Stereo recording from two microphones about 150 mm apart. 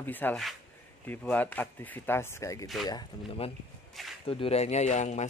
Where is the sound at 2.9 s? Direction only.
35° left (ahead or behind).